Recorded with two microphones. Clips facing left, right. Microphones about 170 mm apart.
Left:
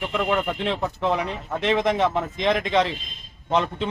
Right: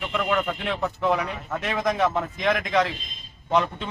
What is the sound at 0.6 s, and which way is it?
Speech, 25° left (ahead or behind).